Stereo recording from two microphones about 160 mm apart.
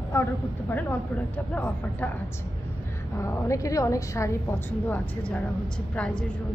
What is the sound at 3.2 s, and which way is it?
A woman's voice, 20° left (ahead or behind).